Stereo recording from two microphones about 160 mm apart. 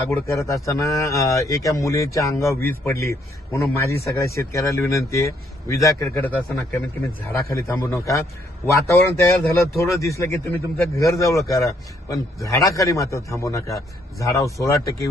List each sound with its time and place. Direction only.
0.3 s a man's voice: 20° left (ahead or behind)